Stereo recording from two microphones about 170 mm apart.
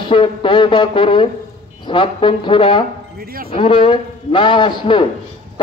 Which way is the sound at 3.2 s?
60° right (ahead or behind).